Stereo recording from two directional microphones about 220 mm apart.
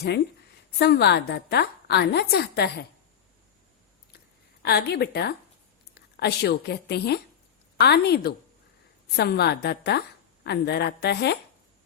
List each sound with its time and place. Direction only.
0.0 s a woman's voice: 50° left (ahead or behind)
4.6 s a woman's voice: 50° left (ahead or behind)